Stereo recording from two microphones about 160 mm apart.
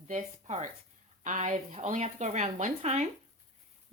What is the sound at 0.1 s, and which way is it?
Speech, 45° right (ahead or behind).